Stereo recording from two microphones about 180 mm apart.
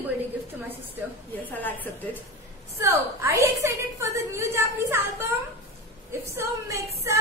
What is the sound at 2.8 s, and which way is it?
A woman's voice, 15° right (ahead or behind).